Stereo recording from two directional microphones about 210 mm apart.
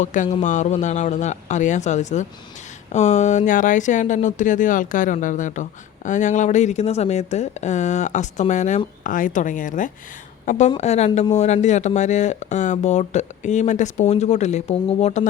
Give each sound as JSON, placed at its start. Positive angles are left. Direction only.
{"t": 0.0, "sound": "a woman's voice", "side_deg": 35}